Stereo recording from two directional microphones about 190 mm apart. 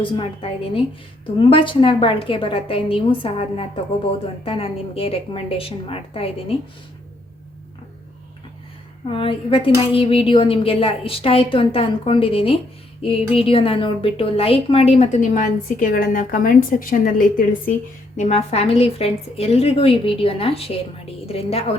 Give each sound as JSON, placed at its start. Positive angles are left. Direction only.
{"t": 0.0, "sound": "a woman's voice", "side_deg": 25}
{"t": 9.0, "sound": "a woman's voice", "side_deg": 30}
{"t": 18.2, "sound": "a woman's voice", "side_deg": 35}